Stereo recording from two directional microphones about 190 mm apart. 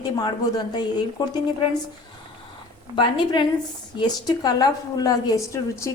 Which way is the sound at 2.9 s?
25° left (ahead or behind).